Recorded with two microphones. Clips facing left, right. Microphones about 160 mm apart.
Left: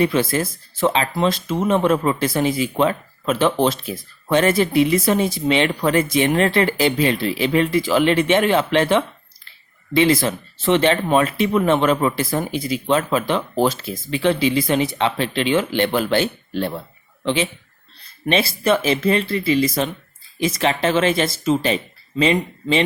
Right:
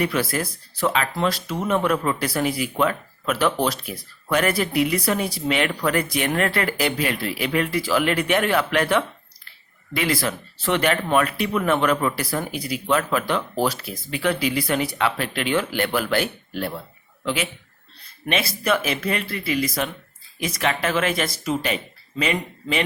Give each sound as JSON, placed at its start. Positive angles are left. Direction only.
{"t": 0.0, "sound": "speech", "side_deg": 25}